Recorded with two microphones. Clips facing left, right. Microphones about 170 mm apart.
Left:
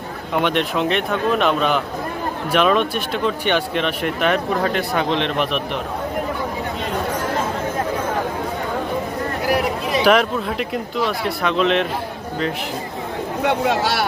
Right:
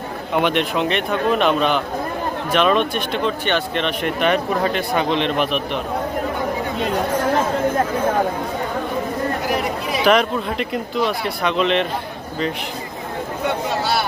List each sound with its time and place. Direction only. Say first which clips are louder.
0.4 s speech: left 1 dB; centre (ahead or behind)
9.5 s speech: left 2 dB; 5° left (ahead or behind)
13.4 s speech: left 4 dB; 90° left